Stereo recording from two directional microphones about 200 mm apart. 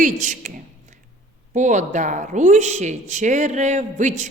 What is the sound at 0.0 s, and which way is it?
A woman's voice, 40° right (ahead or behind).